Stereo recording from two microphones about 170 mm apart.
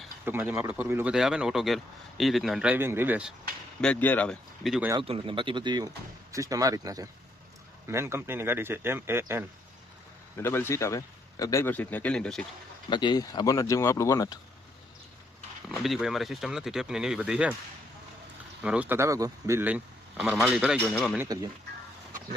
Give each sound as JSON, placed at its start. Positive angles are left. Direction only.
{"t": 0.3, "sound": "speech", "side_deg": -15}
{"t": 3.8, "sound": "speech", "side_deg": 10}
{"t": 4.9, "sound": "speech", "side_deg": -30}
{"t": 10.4, "sound": "a man's voice", "side_deg": 15}
{"t": 12.9, "sound": "speech", "side_deg": 25}
{"t": 15.7, "sound": "speech", "side_deg": 0}
{"t": 18.6, "sound": "speech", "side_deg": -10}
{"t": 21.2, "sound": "speech", "side_deg": -20}